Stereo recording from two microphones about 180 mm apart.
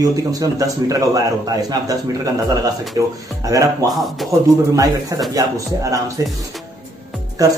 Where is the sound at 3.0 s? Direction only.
20° right (ahead or behind).